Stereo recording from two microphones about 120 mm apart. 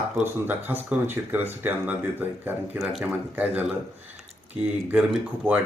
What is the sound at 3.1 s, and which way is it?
Speech, 15° right (ahead or behind).